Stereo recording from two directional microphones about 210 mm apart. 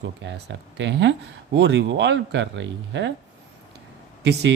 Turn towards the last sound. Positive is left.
turn(degrees=-55)  # may be behind; listen again after turning